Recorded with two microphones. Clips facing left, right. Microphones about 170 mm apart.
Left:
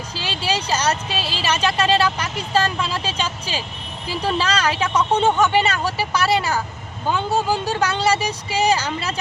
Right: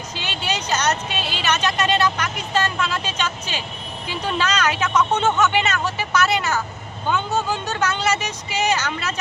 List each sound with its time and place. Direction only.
0.2 s speech: 30° left (ahead or behind)